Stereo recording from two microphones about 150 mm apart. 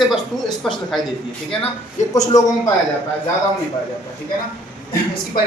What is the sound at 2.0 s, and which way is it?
Speech, 50° left (ahead or behind).